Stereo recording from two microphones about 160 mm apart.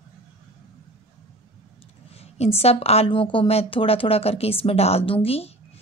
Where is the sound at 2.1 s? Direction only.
40° left (ahead or behind).